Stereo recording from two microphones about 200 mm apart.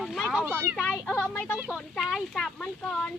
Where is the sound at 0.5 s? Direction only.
10° right (ahead or behind).